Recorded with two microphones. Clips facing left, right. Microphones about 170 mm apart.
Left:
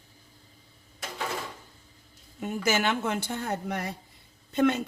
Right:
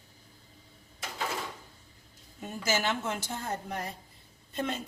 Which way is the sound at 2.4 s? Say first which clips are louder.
Left 4 dB; 65° left (ahead or behind).